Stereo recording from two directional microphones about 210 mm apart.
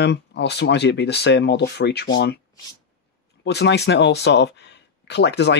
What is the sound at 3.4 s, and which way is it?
Speech, 50° left (ahead or behind).